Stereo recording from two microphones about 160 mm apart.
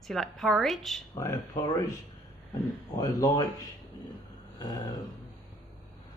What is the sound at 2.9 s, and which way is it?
Speech, 20° left (ahead or behind).